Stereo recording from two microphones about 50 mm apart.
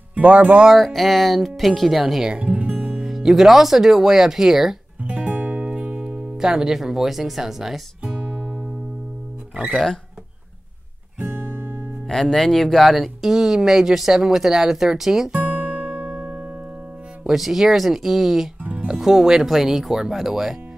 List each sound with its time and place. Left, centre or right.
0.1 s speech: right
0.7 s speech: centre
2.2 s music: right
3.1 s speech: centre
5.0 s music: right; by 7.8 s centre
8.0 s music: right
11.1 s music: right
12.1 s speech: centre
15.3 s music: right
17.2 s speech: centre
18.6 s music: right
18.9 s speech: centre